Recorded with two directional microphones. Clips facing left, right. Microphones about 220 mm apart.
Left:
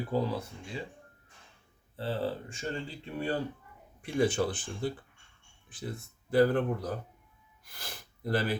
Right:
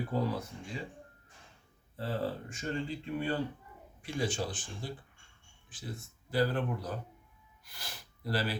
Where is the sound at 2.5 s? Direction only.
30° left (ahead or behind).